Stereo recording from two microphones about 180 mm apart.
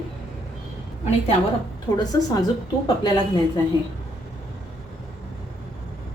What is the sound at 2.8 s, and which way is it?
Speech, 25° left (ahead or behind).